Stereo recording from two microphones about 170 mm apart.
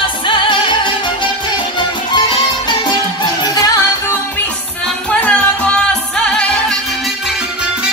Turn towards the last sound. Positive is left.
turn(degrees=5)  # may be behind; listen again after turning